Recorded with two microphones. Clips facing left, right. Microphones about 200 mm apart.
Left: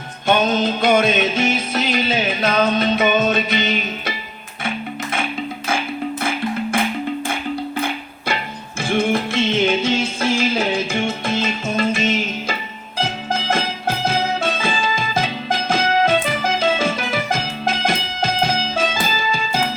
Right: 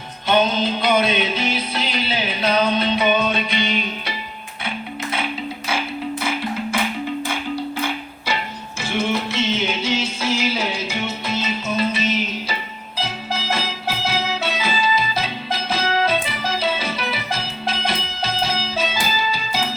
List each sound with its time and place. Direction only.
0.3 s music: 50° left (ahead or behind)
8.8 s music: 55° left (ahead or behind)